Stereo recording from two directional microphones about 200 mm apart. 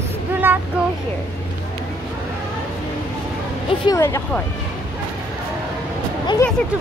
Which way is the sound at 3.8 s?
15° left (ahead or behind).